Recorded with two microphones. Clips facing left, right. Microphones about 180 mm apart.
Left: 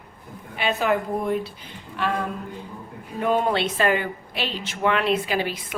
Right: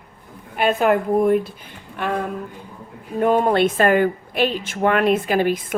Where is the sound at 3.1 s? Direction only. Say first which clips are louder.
Right 5 dB; 50° right (ahead or behind).